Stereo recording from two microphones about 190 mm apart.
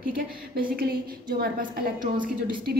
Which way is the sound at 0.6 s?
50° right (ahead or behind).